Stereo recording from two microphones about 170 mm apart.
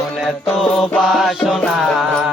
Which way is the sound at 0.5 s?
Centre (ahead or behind).